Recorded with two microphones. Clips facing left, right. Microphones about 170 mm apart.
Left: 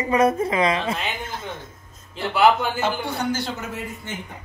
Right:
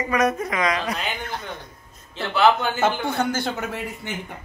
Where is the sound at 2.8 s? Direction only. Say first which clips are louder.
Right 3 dB; 50° right (ahead or behind).